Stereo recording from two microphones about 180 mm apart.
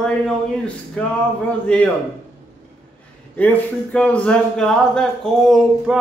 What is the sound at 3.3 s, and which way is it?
A man's voice, 10° left (ahead or behind).